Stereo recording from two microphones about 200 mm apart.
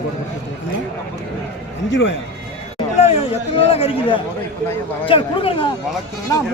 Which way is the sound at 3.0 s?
30° left (ahead or behind).